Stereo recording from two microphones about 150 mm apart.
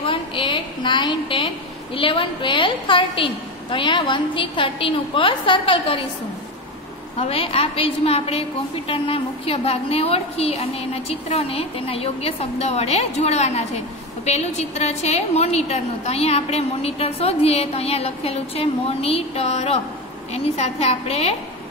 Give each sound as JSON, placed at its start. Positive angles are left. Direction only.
{"t": 0.0, "sound": "a sound", "side_deg": 35}
{"t": 2.0, "sound": "a woman's voice", "side_deg": 35}
{"t": 7.2, "sound": "a woman's voice", "side_deg": 40}